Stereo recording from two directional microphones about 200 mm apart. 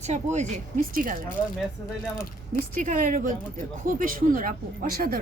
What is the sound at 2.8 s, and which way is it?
Speech, 40° right (ahead or behind).